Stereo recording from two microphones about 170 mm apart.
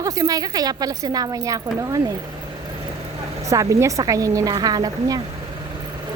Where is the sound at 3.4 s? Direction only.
20° right (ahead or behind).